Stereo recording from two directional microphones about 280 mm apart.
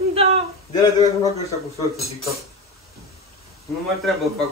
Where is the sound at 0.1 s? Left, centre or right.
Right.